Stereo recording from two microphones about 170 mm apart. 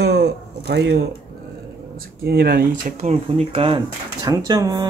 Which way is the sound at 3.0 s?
40° right (ahead or behind).